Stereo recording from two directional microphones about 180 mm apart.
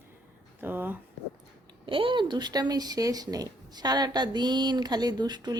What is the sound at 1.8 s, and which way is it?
Speech, 30° right (ahead or behind).